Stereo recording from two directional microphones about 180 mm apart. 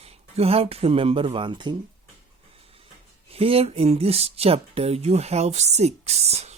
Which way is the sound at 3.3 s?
30° right (ahead or behind).